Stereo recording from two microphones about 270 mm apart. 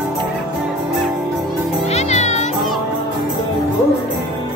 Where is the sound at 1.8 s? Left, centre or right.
Left.